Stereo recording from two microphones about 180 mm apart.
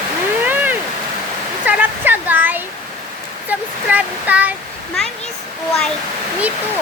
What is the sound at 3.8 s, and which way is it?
Waterfall, 10° right (ahead or behind).